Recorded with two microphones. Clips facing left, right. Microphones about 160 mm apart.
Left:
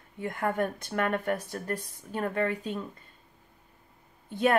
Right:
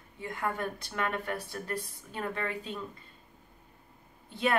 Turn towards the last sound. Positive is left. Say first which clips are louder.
# left 4 dB
turn(degrees=45)  # may be behind; listen again after turning